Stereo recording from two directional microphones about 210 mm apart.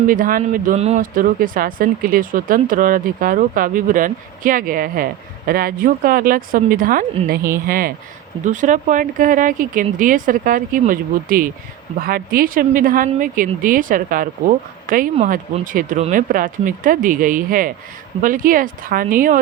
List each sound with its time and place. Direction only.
0.1 s speech: 40° right (ahead or behind)
15.1 s speech: 30° right (ahead or behind)